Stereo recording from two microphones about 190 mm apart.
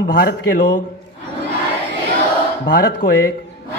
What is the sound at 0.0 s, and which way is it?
Speech, 60° left (ahead or behind).